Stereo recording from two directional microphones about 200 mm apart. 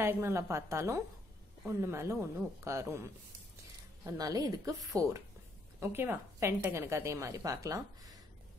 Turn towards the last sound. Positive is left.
turn(degrees=-15)  # may be behind; listen again after turning